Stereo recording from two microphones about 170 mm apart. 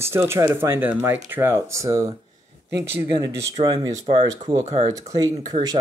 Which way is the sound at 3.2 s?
25° right (ahead or behind).